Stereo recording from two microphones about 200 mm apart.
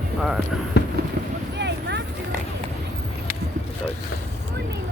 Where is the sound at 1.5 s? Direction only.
60° right (ahead or behind).